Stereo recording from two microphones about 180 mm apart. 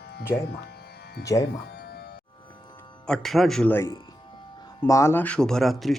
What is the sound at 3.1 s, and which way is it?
Speech, centre (ahead or behind).